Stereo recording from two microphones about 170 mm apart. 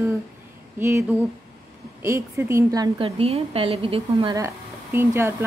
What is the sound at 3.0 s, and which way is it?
A woman's voice, 35° right (ahead or behind).